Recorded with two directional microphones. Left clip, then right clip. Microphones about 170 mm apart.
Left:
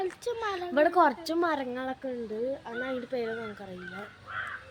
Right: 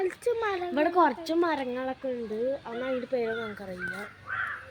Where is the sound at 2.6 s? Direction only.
10° right (ahead or behind).